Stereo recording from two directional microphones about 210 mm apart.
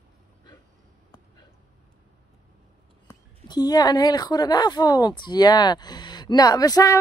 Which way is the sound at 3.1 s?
20° left (ahead or behind).